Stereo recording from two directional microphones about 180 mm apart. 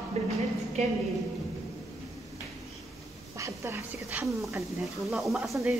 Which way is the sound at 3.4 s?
15° right (ahead or behind).